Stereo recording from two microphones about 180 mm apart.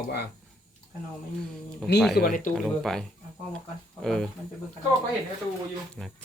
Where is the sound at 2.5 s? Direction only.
Centre (ahead or behind).